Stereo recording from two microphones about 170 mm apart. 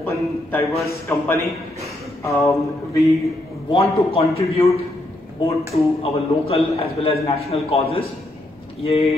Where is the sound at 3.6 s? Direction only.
35° left (ahead or behind).